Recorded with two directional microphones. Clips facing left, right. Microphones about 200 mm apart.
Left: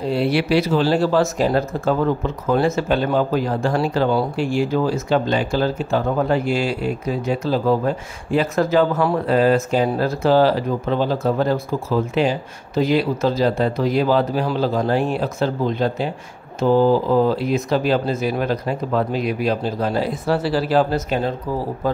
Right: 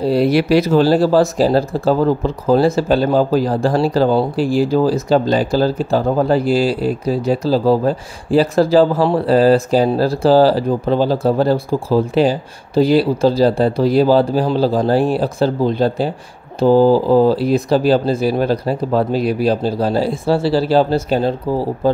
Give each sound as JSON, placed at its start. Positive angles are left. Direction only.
{"t": 0.0, "sound": "speech", "side_deg": -40}